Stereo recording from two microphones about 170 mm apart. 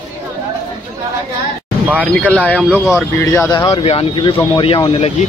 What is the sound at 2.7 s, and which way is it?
Speech, 5° right (ahead or behind).